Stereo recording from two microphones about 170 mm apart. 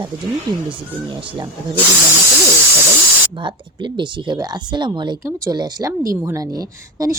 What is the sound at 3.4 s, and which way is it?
A woman's voice, 30° right (ahead or behind).